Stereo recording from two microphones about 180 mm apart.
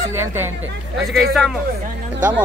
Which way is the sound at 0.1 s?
15° right (ahead or behind).